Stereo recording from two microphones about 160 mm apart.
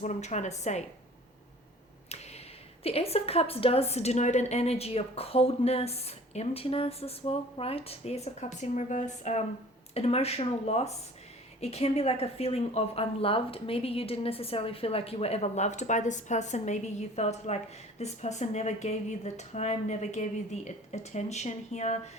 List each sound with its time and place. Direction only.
0.0 s speech: 45° left (ahead or behind)
2.8 s speech: 40° left (ahead or behind)